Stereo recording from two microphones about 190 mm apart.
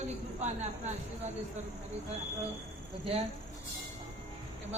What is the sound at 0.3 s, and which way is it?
Speech, 35° right (ahead or behind).